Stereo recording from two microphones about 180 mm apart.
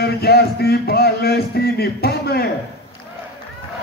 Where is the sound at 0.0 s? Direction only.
60° left (ahead or behind).